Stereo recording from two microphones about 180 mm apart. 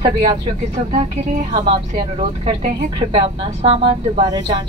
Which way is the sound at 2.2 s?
30° right (ahead or behind).